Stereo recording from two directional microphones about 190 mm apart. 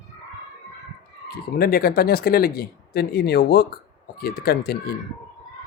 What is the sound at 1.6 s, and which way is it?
Speech, 50° left (ahead or behind).